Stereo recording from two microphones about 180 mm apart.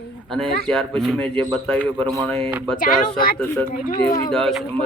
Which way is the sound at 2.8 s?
50° left (ahead or behind).